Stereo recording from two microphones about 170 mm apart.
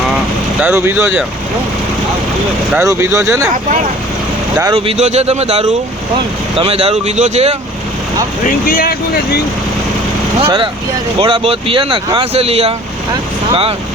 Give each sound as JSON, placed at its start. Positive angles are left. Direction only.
{"t": 0.6, "sound": "speech", "side_deg": -15}
{"t": 2.7, "sound": "speech", "side_deg": -15}
{"t": 4.7, "sound": "speech", "side_deg": -35}
{"t": 8.4, "sound": "speech", "side_deg": 55}
{"t": 10.4, "sound": "speech", "side_deg": -30}